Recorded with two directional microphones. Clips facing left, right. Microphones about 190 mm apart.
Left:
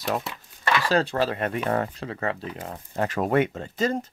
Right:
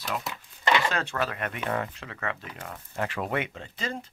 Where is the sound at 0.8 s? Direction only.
35° left (ahead or behind).